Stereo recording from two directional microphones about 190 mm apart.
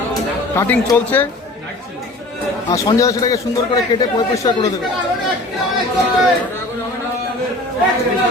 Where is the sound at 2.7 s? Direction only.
20° left (ahead or behind).